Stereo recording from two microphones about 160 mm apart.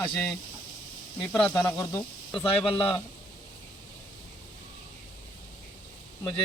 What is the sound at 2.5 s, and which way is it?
Speech, 35° left (ahead or behind).